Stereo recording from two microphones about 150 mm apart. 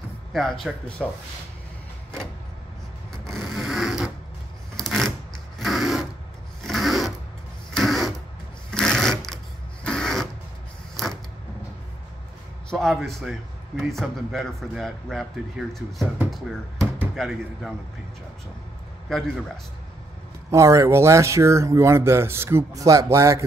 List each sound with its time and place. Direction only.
0.3 s a man's voice: centre (ahead or behind)
3.3 s a sound: centre (ahead or behind)
4.7 s shuffling cards: 5° left (ahead or behind)
5.6 s a sound: centre (ahead or behind)
6.6 s rub: centre (ahead or behind)
7.7 s a sound: centre (ahead or behind)
8.6 s sewing machine: 5° left (ahead or behind)
9.8 s a sound: 5° left (ahead or behind)
11.0 s creak: centre (ahead or behind)
12.6 s a man's voice: centre (ahead or behind)
17.1 s a man's voice: centre (ahead or behind)
19.0 s a man's voice: centre (ahead or behind)
20.5 s speech: 20° right (ahead or behind)